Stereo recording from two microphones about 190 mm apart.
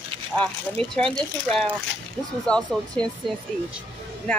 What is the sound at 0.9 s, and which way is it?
Speech, 5° left (ahead or behind).